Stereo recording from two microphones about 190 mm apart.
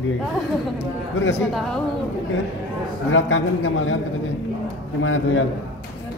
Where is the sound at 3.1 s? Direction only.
90° left.